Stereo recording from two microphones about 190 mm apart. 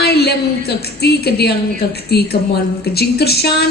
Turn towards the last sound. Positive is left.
turn(degrees=60)  # may be behind; listen again after turning